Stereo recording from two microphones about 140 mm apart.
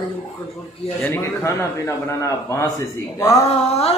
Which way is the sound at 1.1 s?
20° left (ahead or behind).